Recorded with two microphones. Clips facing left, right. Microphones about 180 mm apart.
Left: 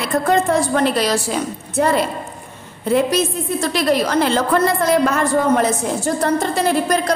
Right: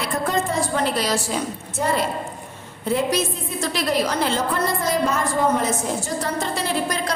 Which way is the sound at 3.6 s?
60° left (ahead or behind).